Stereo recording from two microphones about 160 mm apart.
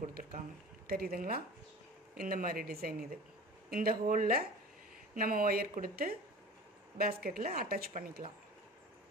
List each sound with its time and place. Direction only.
0.0 s speech: 60° right (ahead or behind)
0.8 s a woman's voice: 70° right (ahead or behind)
7.2 s a woman's voice: 65° right (ahead or behind)